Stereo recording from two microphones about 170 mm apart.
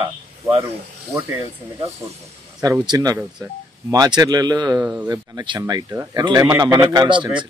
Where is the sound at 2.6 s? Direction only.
20° right (ahead or behind).